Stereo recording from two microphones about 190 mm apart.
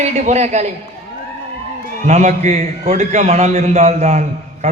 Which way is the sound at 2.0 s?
35° right (ahead or behind).